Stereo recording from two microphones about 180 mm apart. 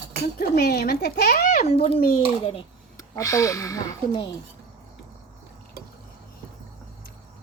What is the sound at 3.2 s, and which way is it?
Speech, 15° left (ahead or behind).